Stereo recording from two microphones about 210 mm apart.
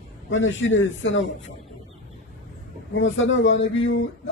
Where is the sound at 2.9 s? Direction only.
65° left (ahead or behind).